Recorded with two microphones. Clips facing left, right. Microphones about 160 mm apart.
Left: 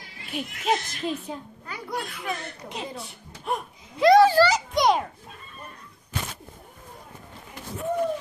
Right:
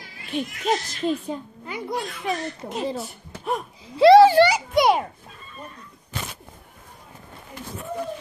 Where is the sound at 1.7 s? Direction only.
20° right (ahead or behind).